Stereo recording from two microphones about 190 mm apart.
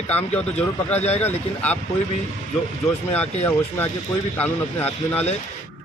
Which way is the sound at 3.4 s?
10° left (ahead or behind).